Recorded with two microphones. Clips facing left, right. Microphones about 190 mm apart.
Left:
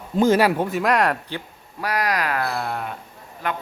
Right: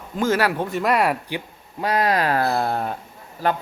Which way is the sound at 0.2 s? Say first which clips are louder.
Left 4 dB; 15° left (ahead or behind).